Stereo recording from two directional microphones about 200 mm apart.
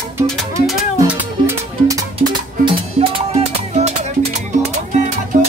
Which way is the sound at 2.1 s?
30° right (ahead or behind).